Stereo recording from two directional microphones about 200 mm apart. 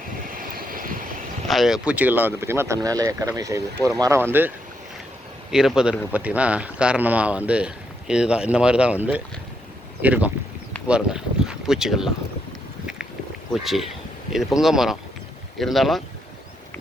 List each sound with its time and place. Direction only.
0.3 s vehicle: 45° right (ahead or behind)
1.5 s speech: centre (ahead or behind)
13.5 s speech: centre (ahead or behind)